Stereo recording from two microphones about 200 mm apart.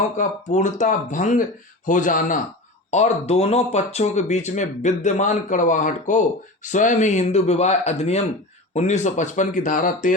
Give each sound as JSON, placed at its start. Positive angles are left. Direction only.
{"t": 0.2, "sound": "speech", "side_deg": 35}